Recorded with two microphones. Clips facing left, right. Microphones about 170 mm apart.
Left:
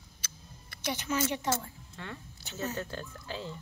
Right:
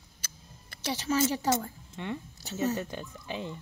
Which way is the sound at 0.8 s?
30° right (ahead or behind).